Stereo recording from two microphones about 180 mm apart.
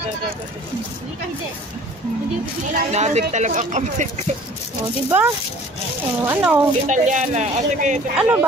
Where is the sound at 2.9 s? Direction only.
40° right (ahead or behind).